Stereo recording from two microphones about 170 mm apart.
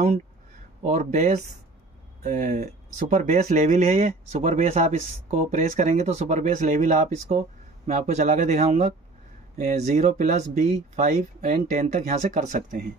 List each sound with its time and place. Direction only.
0.8 s speech: 45° right (ahead or behind)